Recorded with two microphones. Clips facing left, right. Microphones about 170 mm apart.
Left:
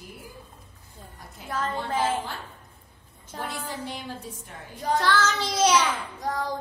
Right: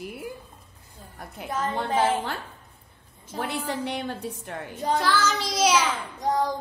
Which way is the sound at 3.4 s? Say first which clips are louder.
Right 5 dB; 70° right (ahead or behind).